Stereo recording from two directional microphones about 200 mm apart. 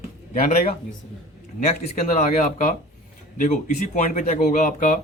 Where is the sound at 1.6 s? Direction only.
40° left (ahead or behind).